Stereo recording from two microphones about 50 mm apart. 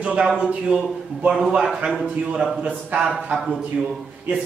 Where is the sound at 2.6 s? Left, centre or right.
Right.